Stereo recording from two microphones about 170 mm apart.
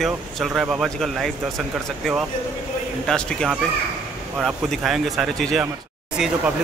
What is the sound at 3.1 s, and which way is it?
A man's voice, 5° left (ahead or behind).